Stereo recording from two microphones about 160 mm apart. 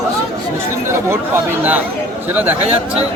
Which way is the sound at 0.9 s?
15° right (ahead or behind).